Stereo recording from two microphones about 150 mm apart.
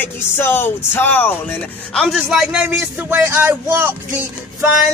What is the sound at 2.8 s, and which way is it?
Music, 15° right (ahead or behind).